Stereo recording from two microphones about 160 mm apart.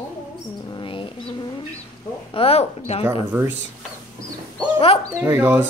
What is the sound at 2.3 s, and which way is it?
Speech, 40° left (ahead or behind).